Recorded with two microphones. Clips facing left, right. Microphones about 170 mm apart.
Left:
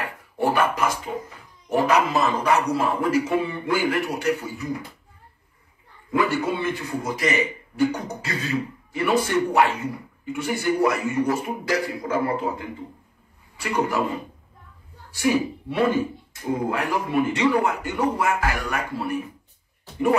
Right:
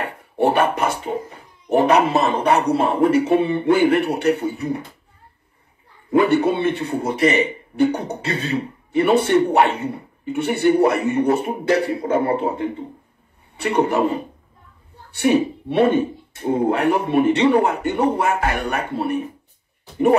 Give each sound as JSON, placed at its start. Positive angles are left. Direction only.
{"t": 0.0, "sound": "a sound", "side_deg": -30}
{"t": 0.9, "sound": "a child's voice", "side_deg": -30}
{"t": 6.3, "sound": "speech", "side_deg": -30}
{"t": 13.9, "sound": "a man's voice", "side_deg": -30}